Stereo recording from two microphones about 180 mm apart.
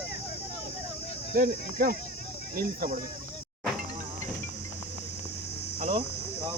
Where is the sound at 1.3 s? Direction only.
55° right (ahead or behind).